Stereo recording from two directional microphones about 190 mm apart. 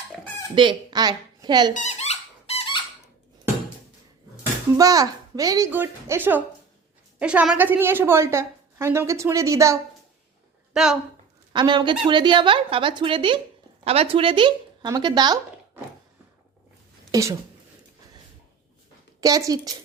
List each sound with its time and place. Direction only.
0.5 s speech: 25° right (ahead or behind)
1.7 s squeak: 35° left (ahead or behind)
4.8 s a woman's voice: 20° right (ahead or behind)
10.8 s a woman's voice: centre (ahead or behind)
11.5 s a woman's voice: 25° right (ahead or behind)
17.1 s speech: 15° right (ahead or behind)
19.2 s a woman's voice: 20° right (ahead or behind)